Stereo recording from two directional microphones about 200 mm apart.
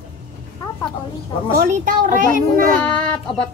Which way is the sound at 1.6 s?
40° right (ahead or behind).